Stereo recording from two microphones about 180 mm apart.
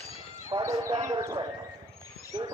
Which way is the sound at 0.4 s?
20° right (ahead or behind).